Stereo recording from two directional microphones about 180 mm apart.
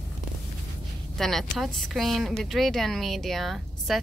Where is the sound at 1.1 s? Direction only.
Centre (ahead or behind).